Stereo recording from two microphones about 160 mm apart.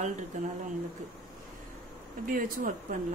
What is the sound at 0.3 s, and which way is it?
Speech, 50° right (ahead or behind).